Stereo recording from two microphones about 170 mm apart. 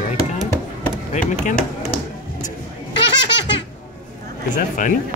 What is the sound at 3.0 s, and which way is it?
Baby laughter, 90° left.